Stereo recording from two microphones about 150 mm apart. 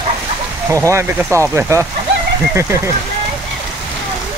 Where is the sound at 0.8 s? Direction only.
20° right (ahead or behind).